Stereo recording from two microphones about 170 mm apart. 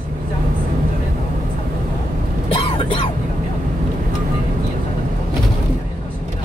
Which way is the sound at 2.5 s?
30° left (ahead or behind).